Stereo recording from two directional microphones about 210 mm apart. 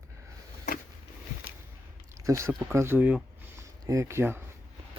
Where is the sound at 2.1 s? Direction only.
15° right (ahead or behind).